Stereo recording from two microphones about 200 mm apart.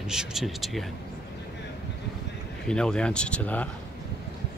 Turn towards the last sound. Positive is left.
turn(degrees=5)  # may be behind; listen again after turning